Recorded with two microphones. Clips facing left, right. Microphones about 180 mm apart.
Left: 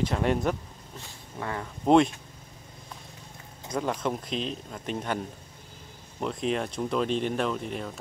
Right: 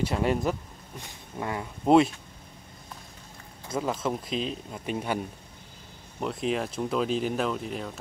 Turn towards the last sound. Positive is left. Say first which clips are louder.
# even
turn(degrees=0)  # may be behind; listen again after turning